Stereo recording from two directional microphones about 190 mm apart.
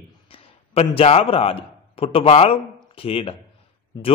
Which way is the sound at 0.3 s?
30° left (ahead or behind).